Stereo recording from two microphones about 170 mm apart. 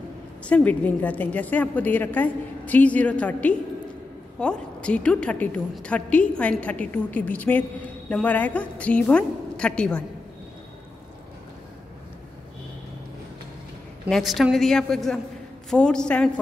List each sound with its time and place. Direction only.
0.5 s a woman's voice: 10° left (ahead or behind)
14.0 s a woman's voice: centre (ahead or behind)